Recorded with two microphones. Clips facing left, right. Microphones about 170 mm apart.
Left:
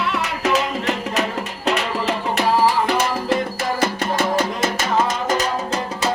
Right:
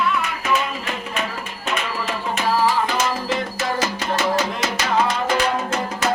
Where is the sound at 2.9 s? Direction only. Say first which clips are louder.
Left 3 dB; 60° left (ahead or behind).